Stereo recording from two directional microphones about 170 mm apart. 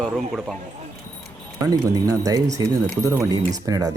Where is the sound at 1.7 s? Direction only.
20° right (ahead or behind).